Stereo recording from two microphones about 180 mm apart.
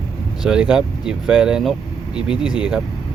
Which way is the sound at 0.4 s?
5° right (ahead or behind).